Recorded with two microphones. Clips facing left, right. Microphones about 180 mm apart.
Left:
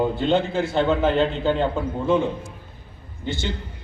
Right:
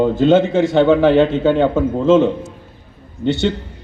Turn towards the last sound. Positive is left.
turn(degrees=-70)  # may be behind; listen again after turning